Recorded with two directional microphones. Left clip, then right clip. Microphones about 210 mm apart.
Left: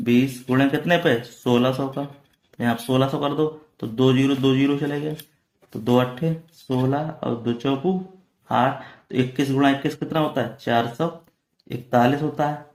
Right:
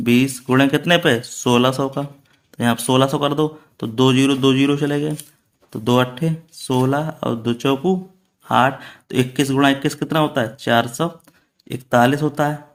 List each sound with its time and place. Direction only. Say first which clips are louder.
0.0 s speech: right 3 dB; 40° right (ahead or behind)